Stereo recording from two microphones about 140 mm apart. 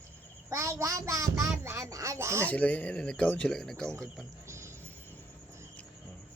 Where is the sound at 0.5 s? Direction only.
20° right (ahead or behind).